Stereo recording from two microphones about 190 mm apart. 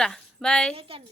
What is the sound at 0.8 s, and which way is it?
Speech, 30° right (ahead or behind).